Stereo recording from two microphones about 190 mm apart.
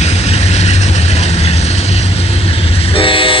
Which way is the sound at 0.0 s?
35° left (ahead or behind).